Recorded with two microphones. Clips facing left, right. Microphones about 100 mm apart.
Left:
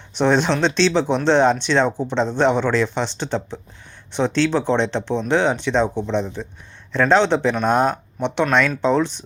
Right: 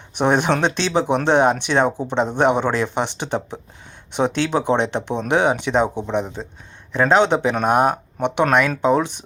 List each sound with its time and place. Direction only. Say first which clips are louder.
0.2 s speech: even; 10° right (ahead or behind)